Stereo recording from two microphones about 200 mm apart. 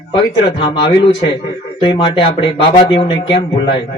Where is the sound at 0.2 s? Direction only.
25° left (ahead or behind).